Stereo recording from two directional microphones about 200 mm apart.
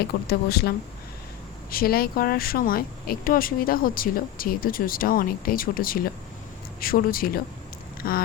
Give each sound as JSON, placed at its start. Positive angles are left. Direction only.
{"t": 0.3, "sound": "speech", "side_deg": 50}
{"t": 1.7, "sound": "speech", "side_deg": 50}